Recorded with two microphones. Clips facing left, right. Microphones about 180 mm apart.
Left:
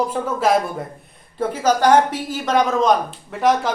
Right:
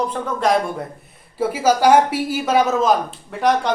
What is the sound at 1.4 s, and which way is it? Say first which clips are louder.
Speech: right 1 dB; 10° right (ahead or behind).